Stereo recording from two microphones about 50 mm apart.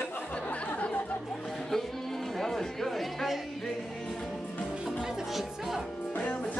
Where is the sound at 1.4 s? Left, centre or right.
Centre.